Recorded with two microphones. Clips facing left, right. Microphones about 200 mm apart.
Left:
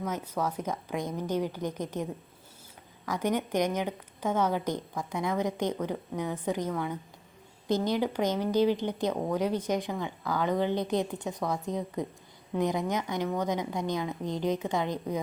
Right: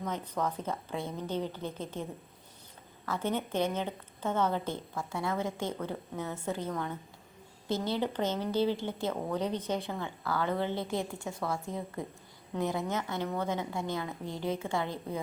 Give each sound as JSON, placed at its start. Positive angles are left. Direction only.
{"t": 0.0, "sound": "speech", "side_deg": 10}
{"t": 3.1, "sound": "speech", "side_deg": 15}